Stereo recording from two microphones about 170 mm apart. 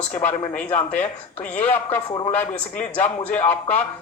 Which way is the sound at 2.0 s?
30° left (ahead or behind).